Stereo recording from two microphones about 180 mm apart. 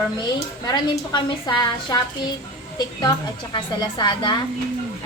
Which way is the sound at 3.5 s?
25° left (ahead or behind).